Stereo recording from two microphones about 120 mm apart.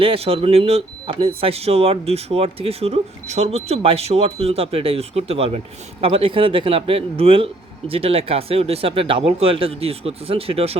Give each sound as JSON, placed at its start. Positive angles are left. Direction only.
{"t": 0.0, "sound": "speech", "side_deg": -50}